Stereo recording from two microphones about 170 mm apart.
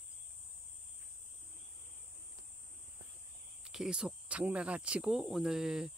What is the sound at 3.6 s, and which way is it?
Speech, 5° right (ahead or behind).